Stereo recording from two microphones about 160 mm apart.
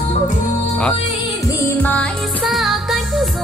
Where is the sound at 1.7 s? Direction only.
10° left (ahead or behind).